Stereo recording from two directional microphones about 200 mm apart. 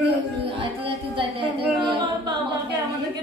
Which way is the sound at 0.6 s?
25° right (ahead or behind).